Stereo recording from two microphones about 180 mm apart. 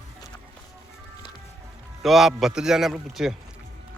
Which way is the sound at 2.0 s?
Centre (ahead or behind).